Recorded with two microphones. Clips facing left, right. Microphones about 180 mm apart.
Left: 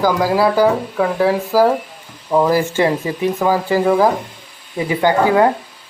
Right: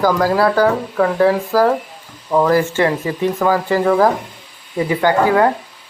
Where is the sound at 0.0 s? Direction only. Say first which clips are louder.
Even; 5° left (ahead or behind).